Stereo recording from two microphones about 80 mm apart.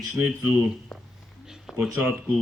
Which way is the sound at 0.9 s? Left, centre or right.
Centre.